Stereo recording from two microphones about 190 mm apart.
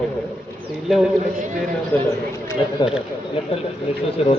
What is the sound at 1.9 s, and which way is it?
Speech, 20° left (ahead or behind).